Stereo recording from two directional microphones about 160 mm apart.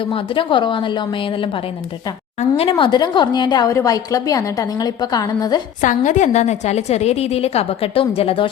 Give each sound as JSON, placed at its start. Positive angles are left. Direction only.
{"t": 0.0, "sound": "a woman's voice", "side_deg": 35}
{"t": 5.8, "sound": "a woman's voice", "side_deg": 55}